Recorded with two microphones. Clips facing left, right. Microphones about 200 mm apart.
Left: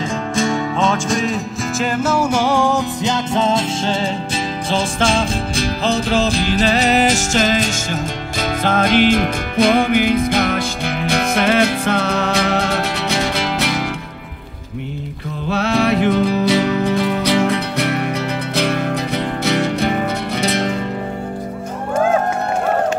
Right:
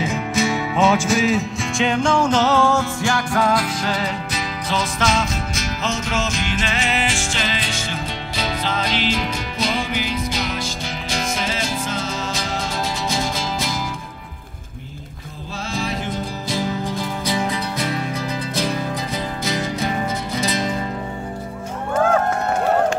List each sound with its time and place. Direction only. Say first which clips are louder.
0.0 s music: left 2 dB; 5° right (ahead or behind); by 13.8 s 70° left (ahead or behind)
15.5 s music: left 10 dB; 70° left (ahead or behind)